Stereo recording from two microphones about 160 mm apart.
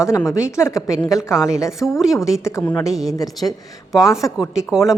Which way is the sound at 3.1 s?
20° left (ahead or behind).